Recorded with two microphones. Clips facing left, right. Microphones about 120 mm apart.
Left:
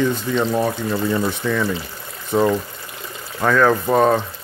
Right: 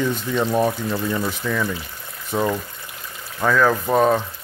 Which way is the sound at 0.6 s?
15° left (ahead or behind).